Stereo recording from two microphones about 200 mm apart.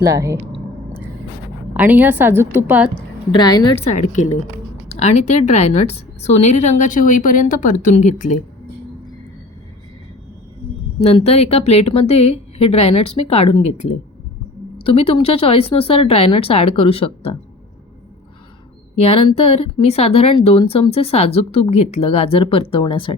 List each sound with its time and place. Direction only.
0.0 s a woman's voice: 15° right (ahead or behind)
1.7 s a woman's voice: 10° right (ahead or behind)
3.3 s speech: 20° left (ahead or behind)
3.8 s a woman's voice: 35° left (ahead or behind)
11.0 s a woman's voice: 30° left (ahead or behind)
18.9 s speech: 30° left (ahead or behind)